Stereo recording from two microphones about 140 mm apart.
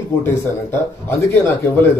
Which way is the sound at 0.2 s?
15° left (ahead or behind).